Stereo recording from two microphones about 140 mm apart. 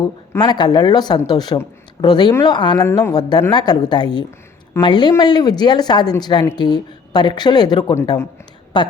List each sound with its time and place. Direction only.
0.0 s speech: 30° left (ahead or behind)
8.7 s speech: 35° left (ahead or behind)